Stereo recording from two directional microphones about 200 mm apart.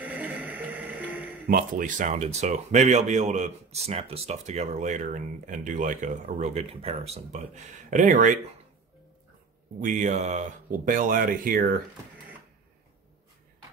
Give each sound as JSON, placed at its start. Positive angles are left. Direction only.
{"t": 0.0, "sound": "music", "side_deg": -5}
{"t": 1.4, "sound": "speech", "side_deg": -45}
{"t": 9.8, "sound": "speech", "side_deg": -35}